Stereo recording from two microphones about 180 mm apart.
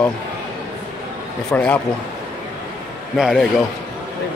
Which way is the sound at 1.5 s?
5° left (ahead or behind).